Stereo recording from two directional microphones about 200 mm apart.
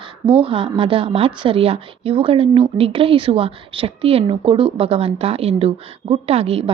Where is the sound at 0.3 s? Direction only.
30° right (ahead or behind).